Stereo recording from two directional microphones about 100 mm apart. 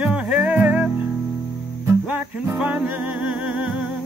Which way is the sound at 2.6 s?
15° right (ahead or behind).